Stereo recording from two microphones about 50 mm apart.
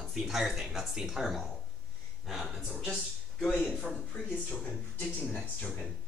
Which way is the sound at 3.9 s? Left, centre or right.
Centre.